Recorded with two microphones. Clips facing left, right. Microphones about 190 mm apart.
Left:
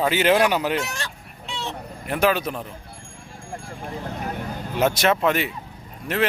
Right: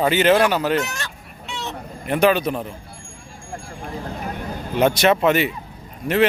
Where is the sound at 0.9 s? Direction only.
30° left (ahead or behind).